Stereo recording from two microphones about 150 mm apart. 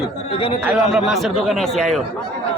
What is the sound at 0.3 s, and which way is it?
Speech, 40° left (ahead or behind).